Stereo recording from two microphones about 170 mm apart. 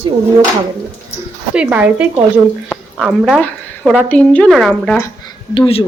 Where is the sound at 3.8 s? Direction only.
10° right (ahead or behind).